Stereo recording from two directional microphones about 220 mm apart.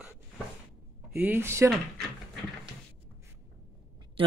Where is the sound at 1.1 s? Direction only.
10° right (ahead or behind).